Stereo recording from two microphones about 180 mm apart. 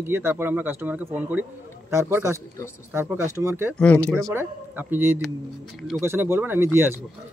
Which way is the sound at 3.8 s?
5° left (ahead or behind).